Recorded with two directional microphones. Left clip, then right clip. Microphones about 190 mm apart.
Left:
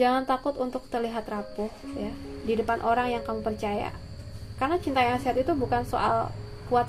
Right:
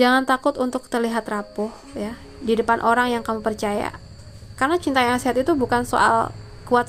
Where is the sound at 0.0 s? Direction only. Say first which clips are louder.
Right 7 dB; 40° right (ahead or behind).